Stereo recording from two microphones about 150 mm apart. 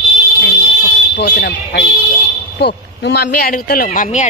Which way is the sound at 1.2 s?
90° left.